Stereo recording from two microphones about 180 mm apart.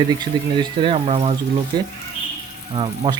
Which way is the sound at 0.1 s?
25° right (ahead or behind).